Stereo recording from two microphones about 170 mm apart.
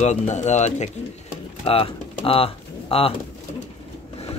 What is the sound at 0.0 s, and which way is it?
Speech, 40° left (ahead or behind).